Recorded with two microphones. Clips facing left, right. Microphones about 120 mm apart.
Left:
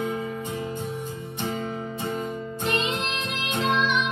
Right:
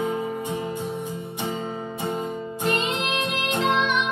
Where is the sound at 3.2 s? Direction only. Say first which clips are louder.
Right 4 dB; 60° right (ahead or behind).